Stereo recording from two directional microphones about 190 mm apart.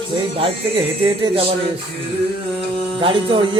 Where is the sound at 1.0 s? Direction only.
30° right (ahead or behind).